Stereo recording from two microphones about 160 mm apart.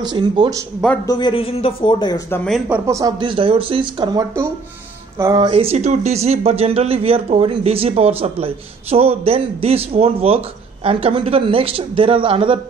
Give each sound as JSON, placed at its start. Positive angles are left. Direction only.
{"t": 0.0, "sound": "speech", "side_deg": -25}
{"t": 1.0, "sound": "speech", "side_deg": 25}
{"t": 2.7, "sound": "speech", "side_deg": -20}
{"t": 5.5, "sound": "speech", "side_deg": -35}